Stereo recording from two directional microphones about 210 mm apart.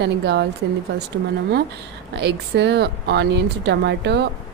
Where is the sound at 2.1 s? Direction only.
55° right (ahead or behind).